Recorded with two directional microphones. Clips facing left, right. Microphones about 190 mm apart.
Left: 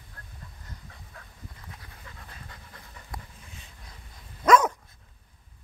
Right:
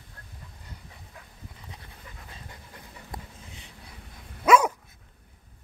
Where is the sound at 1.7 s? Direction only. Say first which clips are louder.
Right 1 dB; 20° right (ahead or behind).